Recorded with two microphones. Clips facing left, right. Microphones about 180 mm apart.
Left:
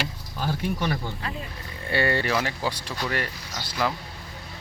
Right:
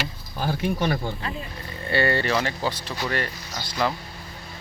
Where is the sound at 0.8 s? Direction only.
25° right (ahead or behind).